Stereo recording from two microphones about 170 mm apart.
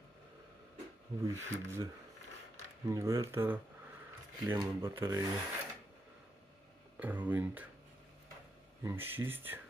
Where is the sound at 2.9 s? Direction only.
20° right (ahead or behind).